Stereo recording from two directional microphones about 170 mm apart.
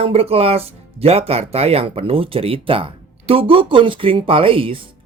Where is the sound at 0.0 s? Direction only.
35° right (ahead or behind).